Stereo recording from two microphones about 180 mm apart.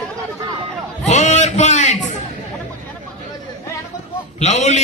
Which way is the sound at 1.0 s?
40° left (ahead or behind).